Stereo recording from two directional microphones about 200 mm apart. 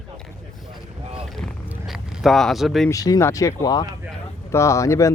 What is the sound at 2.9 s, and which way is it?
Speech, 15° left (ahead or behind).